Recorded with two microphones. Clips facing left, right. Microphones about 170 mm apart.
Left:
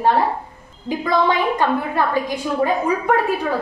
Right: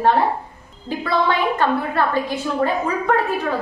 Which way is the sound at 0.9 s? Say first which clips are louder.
Left 2 dB; 15° left (ahead or behind).